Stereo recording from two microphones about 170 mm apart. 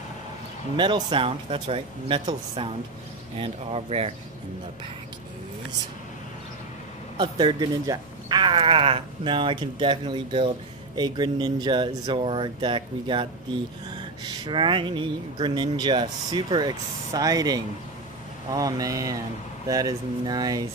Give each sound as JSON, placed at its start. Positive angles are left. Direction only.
{"t": 0.7, "sound": "speech", "side_deg": -30}
{"t": 7.2, "sound": "speech", "side_deg": -25}